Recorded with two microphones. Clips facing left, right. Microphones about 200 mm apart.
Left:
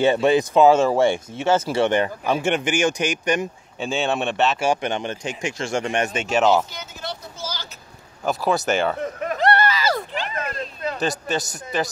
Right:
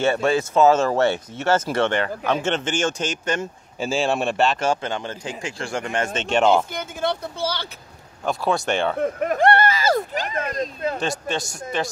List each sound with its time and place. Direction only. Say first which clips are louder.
0.0 s speech: left 3 dB; 15° left (ahead or behind)
3.8 s speech: right 1 dB; centre (ahead or behind)
4.6 s speech: left 1 dB; 20° left (ahead or behind)
6.2 s speech: right 1 dB; 5° left (ahead or behind)
6.7 s speech: right 8 dB; 55° right (ahead or behind)
8.2 s speech: left 1 dB; 5° left (ahead or behind)
9.2 s a sound: right 2 dB; 50° right (ahead or behind)
10.3 s speech: right 3 dB; 40° right (ahead or behind)
11.0 s speech: left 1 dB; 5° left (ahead or behind)